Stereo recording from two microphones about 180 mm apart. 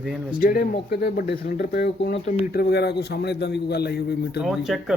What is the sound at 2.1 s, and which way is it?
Speech, 35° left (ahead or behind).